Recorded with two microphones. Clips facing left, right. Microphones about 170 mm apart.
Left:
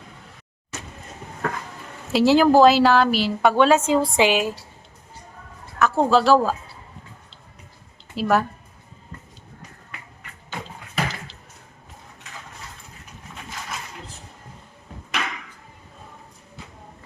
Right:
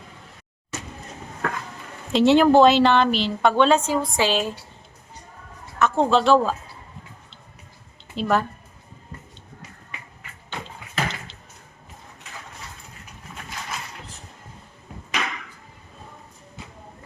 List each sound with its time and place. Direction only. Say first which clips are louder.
2.1 s speech: even; centre (ahead or behind)
3.8 s a woman's voice: left 4 dB; 25° left (ahead or behind)
4.3 s speech: left 2 dB; 10° left (ahead or behind)
5.8 s speech: left 1 dB; 5° left (ahead or behind)
8.1 s speech: left 2 dB; 5° left (ahead or behind)
10.5 s a sound: left 1 dB; centre (ahead or behind)
15.2 s chop: right 1 dB; centre (ahead or behind)